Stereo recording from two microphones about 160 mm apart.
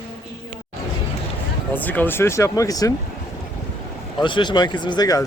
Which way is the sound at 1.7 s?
10° left (ahead or behind).